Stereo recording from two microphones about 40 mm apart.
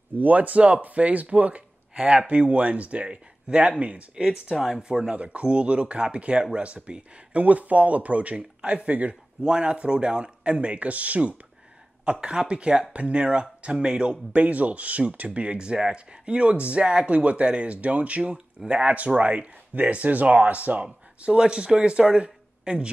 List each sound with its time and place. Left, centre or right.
0.2 s speech: right
4.1 s speech: centre
4.8 s speech: right
5.1 s speech: right
9.4 s speech: right
12.0 s speech: right
14.4 s speech: right